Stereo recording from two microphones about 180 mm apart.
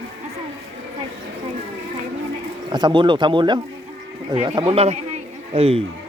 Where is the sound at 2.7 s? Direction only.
25° right (ahead or behind).